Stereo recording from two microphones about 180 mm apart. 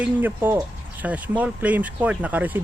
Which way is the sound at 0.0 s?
10° right (ahead or behind).